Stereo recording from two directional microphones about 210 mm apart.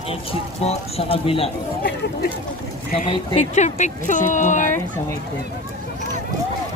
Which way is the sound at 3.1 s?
35° left (ahead or behind).